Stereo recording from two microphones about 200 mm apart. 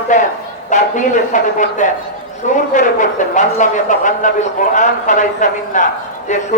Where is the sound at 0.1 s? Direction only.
40° left (ahead or behind).